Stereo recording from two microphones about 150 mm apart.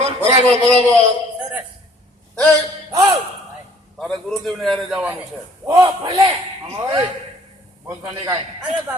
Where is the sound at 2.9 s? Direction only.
20° right (ahead or behind).